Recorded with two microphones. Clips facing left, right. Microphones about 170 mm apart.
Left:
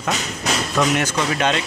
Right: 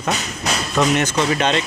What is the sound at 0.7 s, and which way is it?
Speech, 10° left (ahead or behind).